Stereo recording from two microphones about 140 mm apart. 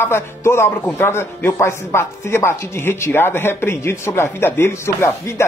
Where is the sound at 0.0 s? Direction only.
15° left (ahead or behind).